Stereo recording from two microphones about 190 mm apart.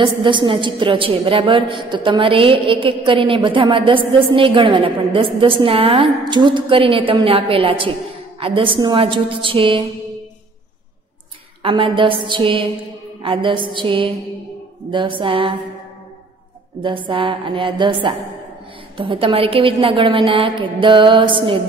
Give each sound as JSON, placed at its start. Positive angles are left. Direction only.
{"t": 0.0, "sound": "a woman's voice", "side_deg": -25}
{"t": 11.6, "sound": "a woman's voice", "side_deg": -25}
{"t": 17.1, "sound": "a woman's voice", "side_deg": -25}